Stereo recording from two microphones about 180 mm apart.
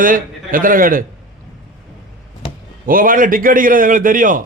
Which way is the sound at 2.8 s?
50° right (ahead or behind).